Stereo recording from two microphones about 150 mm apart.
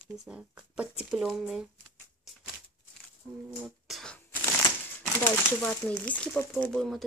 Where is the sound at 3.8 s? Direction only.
5° left (ahead or behind).